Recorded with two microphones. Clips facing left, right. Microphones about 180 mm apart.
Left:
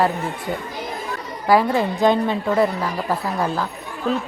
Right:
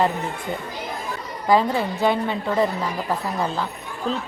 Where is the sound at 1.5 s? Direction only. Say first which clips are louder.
Left 2 dB; 15° left (ahead or behind).